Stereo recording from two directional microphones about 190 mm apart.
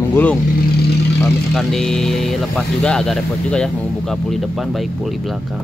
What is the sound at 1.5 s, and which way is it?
Speech, centre (ahead or behind).